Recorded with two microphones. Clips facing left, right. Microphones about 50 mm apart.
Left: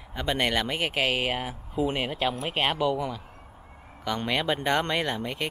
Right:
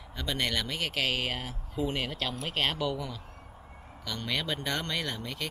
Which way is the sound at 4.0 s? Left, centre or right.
Left.